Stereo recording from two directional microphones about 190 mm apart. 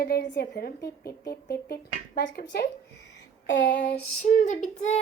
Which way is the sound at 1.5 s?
55° left (ahead or behind).